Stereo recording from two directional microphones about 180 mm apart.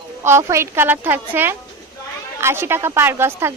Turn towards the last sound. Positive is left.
turn(degrees=-15)  # may be behind; listen again after turning